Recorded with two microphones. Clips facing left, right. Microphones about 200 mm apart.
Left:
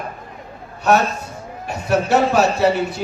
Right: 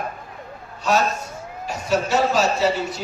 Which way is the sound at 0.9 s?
60° left (ahead or behind).